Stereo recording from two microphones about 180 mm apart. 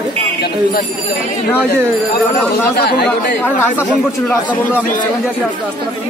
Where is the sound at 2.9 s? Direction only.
65° left (ahead or behind).